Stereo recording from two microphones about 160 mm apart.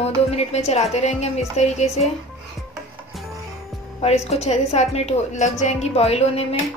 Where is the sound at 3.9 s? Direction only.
40° left (ahead or behind).